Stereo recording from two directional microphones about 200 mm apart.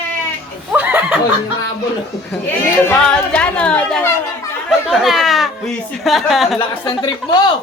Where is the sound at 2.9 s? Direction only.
5° left (ahead or behind).